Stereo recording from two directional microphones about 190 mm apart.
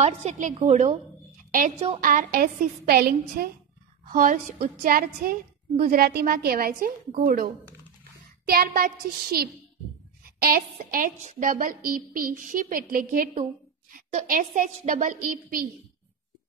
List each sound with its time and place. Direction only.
0.0 s a woman's voice: 40° right (ahead or behind)
2.0 s a woman's voice: 50° right (ahead or behind)
10.8 s a woman's voice: 40° right (ahead or behind)